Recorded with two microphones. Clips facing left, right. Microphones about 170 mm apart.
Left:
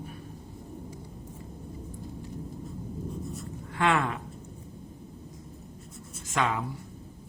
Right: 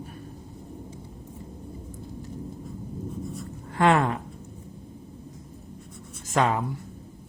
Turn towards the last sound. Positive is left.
turn(degrees=-40)  # may be behind; listen again after turning